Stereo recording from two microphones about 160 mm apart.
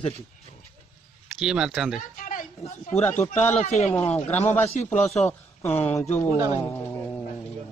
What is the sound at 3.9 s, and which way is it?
Speech, 10° left (ahead or behind).